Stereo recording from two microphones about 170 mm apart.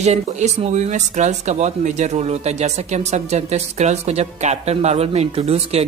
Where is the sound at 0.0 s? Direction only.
40° right (ahead or behind).